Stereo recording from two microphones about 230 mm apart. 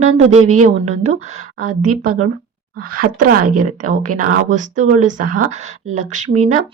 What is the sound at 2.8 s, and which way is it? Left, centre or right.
Speech, right.